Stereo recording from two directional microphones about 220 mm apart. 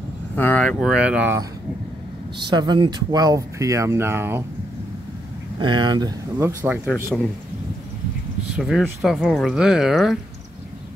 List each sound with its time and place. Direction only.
0.4 s speech: 5° left (ahead or behind)
2.5 s speech: 20° right (ahead or behind)
5.6 s speech: 20° right (ahead or behind)
8.5 s speech: centre (ahead or behind)